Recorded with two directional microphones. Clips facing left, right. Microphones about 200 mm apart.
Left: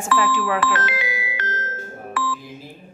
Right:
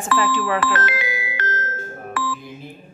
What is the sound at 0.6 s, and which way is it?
Music, 45° right (ahead or behind).